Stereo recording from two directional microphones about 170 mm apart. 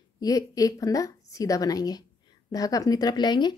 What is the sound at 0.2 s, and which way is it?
Speech, 20° left (ahead or behind).